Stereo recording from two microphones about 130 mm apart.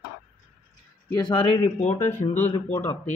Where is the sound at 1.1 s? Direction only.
35° left (ahead or behind).